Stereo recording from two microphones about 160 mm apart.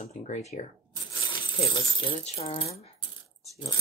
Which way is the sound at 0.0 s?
45° left (ahead or behind).